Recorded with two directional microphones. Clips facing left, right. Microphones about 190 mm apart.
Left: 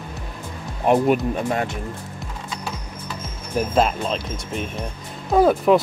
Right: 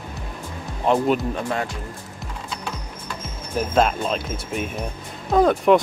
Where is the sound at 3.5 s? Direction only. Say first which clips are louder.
Even; centre (ahead or behind).